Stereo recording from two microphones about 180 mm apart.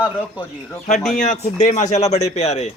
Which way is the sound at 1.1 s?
40° left (ahead or behind).